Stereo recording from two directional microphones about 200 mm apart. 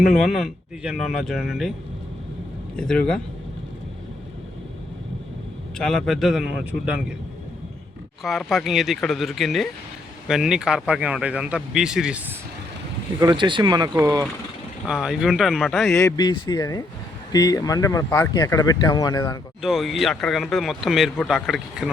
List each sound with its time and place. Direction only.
0.0 s speech: centre (ahead or behind)
2.7 s speech: 5° left (ahead or behind)
5.7 s speech: centre (ahead or behind)
8.2 s speech: centre (ahead or behind)
13.1 s speech: 20° right (ahead or behind)
14.8 s speech: centre (ahead or behind)
15.9 s speech: 15° left (ahead or behind)
19.6 s speech: centre (ahead or behind)